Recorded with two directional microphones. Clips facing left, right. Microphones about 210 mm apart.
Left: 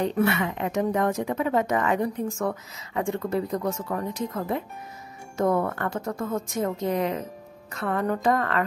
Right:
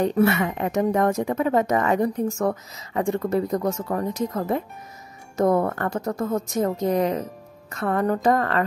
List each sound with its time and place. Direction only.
0.0 s speech: 40° right (ahead or behind)